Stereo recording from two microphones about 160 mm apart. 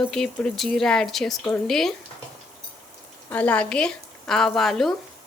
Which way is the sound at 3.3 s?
10° left (ahead or behind).